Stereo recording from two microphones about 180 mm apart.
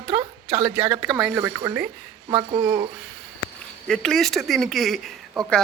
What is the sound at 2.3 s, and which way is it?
Speech, 25° right (ahead or behind).